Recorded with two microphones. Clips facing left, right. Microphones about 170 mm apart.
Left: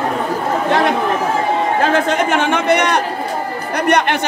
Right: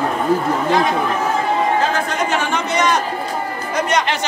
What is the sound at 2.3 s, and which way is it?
Speech, 60° left (ahead or behind).